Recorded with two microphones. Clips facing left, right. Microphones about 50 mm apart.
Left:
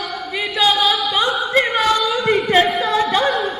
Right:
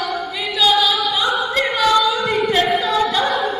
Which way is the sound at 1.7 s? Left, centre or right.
Left.